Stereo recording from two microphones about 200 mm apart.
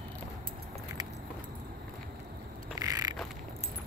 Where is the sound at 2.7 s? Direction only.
20° right (ahead or behind).